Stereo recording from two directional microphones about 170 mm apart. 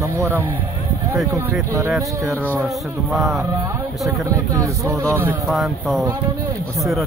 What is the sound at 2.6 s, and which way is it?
Speech, centre (ahead or behind).